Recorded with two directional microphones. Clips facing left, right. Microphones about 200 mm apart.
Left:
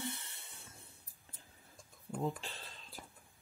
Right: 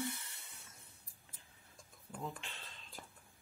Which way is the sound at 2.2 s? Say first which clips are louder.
Left 7 dB; 35° left (ahead or behind).